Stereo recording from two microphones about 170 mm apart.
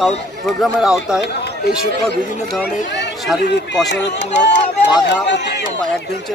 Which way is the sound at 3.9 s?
90° left.